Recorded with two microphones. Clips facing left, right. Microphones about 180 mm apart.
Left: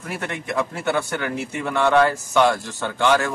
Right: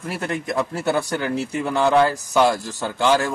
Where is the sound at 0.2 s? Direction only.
35° right (ahead or behind).